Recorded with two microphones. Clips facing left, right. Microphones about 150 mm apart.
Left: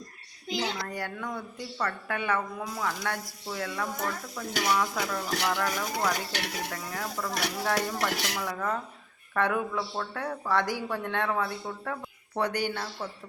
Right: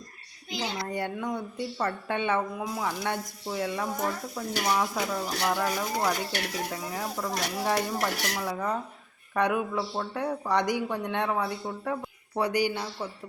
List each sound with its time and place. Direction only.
0.9 s speech: 25° right (ahead or behind)